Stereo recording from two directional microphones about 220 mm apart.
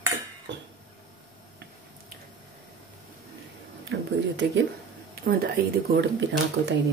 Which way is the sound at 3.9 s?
55° right (ahead or behind).